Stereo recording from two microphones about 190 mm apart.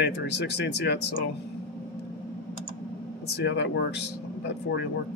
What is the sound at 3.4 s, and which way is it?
Speech, 65° left (ahead or behind).